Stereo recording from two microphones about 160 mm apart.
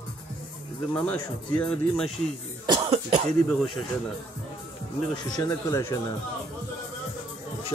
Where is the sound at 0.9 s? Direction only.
10° left (ahead or behind).